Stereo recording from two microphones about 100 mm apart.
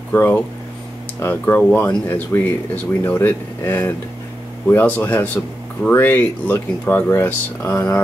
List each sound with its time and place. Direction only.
0.1 s speech: 20° left (ahead or behind)